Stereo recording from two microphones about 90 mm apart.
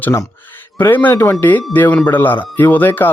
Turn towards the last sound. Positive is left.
turn(degrees=25)  # may be behind; listen again after turning